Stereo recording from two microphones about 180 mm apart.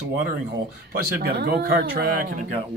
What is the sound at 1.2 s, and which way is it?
Speech, 60° right (ahead or behind).